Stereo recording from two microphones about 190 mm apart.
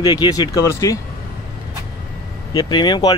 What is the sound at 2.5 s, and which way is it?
Speech, 25° left (ahead or behind).